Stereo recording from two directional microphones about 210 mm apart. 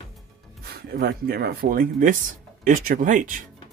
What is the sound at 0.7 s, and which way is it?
Speech, 45° right (ahead or behind).